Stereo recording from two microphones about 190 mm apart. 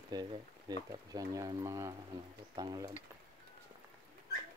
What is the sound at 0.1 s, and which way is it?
Speech, 20° right (ahead or behind).